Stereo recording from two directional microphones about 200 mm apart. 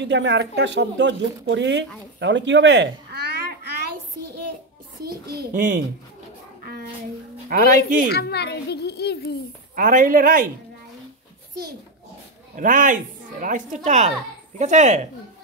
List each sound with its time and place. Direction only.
0.0 s speech: 60° right (ahead or behind)
2.1 s a sound: 60° right (ahead or behind)
5.0 s a child's voice: 50° right (ahead or behind)
6.6 s bathtub: 50° right (ahead or behind)
7.4 s a child's voice: 45° right (ahead or behind)
8.1 s a child's voice: 55° left (ahead or behind)
9.8 s a child's voice: 40° right (ahead or behind)
12.5 s speech: 40° right (ahead or behind)